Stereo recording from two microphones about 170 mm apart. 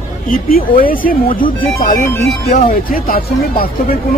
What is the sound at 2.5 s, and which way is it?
Speech, 50° left (ahead or behind).